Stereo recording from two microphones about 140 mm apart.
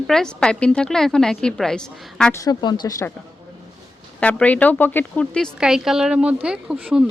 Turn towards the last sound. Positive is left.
turn(degrees=-5)  # may be behind; listen again after turning